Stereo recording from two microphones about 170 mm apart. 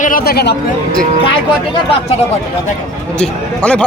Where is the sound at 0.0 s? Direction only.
60° left (ahead or behind).